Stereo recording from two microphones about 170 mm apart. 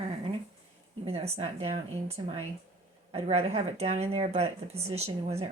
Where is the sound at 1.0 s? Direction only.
35° right (ahead or behind).